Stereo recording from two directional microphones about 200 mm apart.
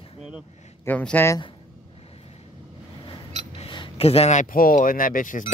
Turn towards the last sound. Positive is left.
turn(degrees=40)  # may be behind; listen again after turning